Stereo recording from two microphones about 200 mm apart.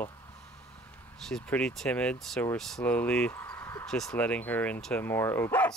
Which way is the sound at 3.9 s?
5° left (ahead or behind).